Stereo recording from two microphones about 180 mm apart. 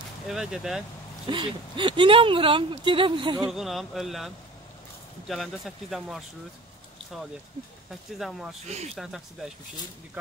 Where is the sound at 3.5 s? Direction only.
Centre (ahead or behind).